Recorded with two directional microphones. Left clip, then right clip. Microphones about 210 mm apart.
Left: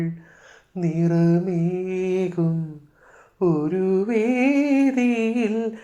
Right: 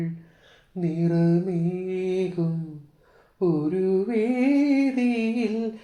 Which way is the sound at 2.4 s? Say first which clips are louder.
Left 4 dB; 25° left (ahead or behind).